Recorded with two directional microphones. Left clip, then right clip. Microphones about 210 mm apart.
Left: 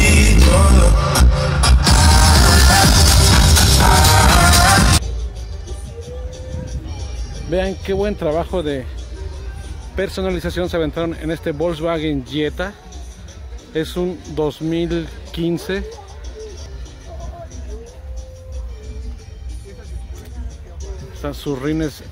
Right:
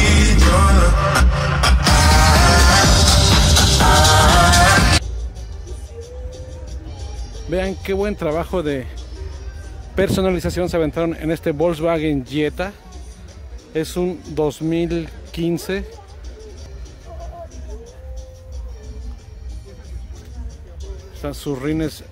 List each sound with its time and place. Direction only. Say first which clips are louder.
0.3 s music: even; 5° right (ahead or behind)
7.4 s music: left 2 dB; 5° right (ahead or behind)
7.8 s speech: left 1 dB; 10° right (ahead or behind)
9.9 s speech: right 3 dB; 30° right (ahead or behind); by 12.7 s 15° right (ahead or behind)
13.7 s speech: even; 10° right (ahead or behind)
21.2 s speech: left 1 dB; 10° right (ahead or behind)